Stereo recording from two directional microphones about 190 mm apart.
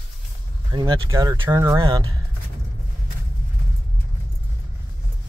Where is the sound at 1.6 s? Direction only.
15° right (ahead or behind).